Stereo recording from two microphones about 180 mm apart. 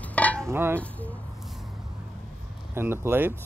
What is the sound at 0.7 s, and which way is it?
Speech, 10° left (ahead or behind).